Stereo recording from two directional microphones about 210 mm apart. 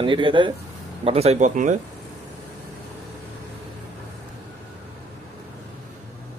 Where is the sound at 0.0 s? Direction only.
25° right (ahead or behind).